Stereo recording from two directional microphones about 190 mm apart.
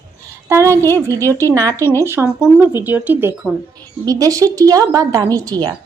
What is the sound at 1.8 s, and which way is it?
Speech, 10° left (ahead or behind).